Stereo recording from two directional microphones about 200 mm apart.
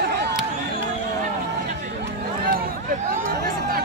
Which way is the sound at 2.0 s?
50° right (ahead or behind).